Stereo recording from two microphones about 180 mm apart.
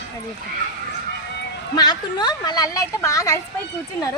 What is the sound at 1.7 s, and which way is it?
A woman's voice, 25° left (ahead or behind).